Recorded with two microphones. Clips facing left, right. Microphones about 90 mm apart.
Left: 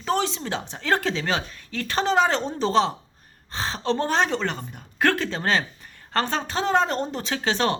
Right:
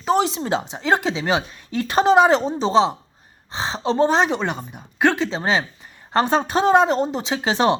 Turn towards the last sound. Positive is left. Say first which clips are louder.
# right 5 dB
turn(degrees=-20)  # may be behind; listen again after turning